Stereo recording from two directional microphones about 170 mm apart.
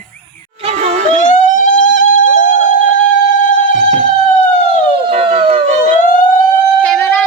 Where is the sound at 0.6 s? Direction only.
40° right (ahead or behind).